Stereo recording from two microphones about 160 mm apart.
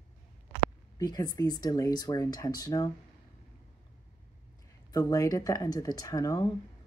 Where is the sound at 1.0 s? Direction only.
25° left (ahead or behind).